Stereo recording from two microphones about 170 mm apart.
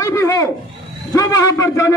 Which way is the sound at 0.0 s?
15° left (ahead or behind).